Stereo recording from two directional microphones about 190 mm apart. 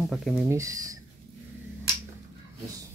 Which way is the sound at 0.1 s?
Centre (ahead or behind).